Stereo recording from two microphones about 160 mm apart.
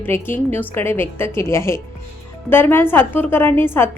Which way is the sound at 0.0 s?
15° left (ahead or behind).